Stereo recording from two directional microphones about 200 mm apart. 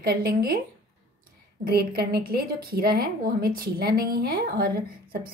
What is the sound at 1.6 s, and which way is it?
A woman's voice, 50° right (ahead or behind).